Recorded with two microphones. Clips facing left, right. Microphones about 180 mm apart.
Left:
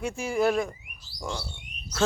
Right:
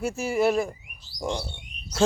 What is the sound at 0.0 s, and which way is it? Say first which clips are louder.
Speech: right 2 dB; 5° right (ahead or behind).